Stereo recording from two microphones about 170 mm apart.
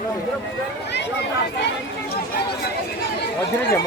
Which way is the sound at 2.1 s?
70° left (ahead or behind).